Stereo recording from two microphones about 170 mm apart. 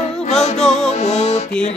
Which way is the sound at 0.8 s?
40° left (ahead or behind).